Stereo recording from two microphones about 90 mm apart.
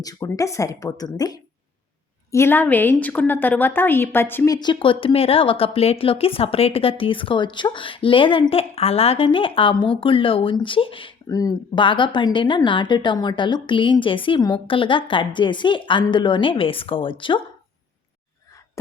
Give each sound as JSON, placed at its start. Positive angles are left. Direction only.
{"t": 0.0, "sound": "a woman's voice", "side_deg": 40}
{"t": 2.3, "sound": "a woman's voice", "side_deg": 25}
{"t": 4.4, "sound": "a woman's voice", "side_deg": 50}
{"t": 11.3, "sound": "a woman's voice", "side_deg": 40}
{"t": 11.7, "sound": "a woman's voice", "side_deg": 65}